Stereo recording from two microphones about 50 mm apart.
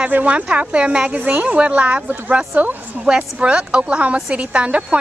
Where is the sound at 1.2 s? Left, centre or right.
Right.